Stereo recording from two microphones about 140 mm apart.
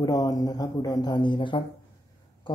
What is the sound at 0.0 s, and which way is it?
Speech, 25° left (ahead or behind).